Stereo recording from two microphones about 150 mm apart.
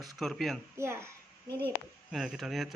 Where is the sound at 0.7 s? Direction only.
15° right (ahead or behind).